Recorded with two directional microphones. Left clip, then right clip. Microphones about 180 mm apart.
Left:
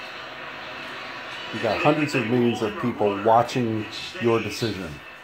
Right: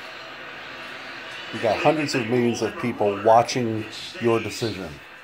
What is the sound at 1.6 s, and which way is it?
Speech, 30° right (ahead or behind).